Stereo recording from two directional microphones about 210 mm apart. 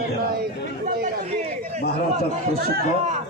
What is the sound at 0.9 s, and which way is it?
Chatter, 45° right (ahead or behind).